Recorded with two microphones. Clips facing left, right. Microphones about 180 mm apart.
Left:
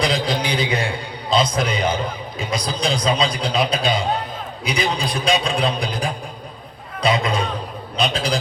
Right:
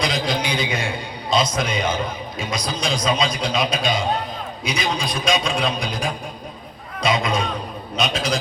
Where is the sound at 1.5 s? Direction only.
30° left (ahead or behind).